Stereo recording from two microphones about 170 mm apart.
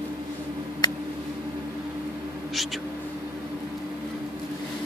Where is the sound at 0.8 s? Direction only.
25° left (ahead or behind).